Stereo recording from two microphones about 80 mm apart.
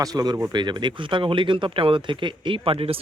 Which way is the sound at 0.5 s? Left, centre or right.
Right.